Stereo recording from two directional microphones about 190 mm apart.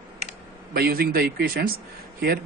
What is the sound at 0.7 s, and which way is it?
Speech, 50° right (ahead or behind).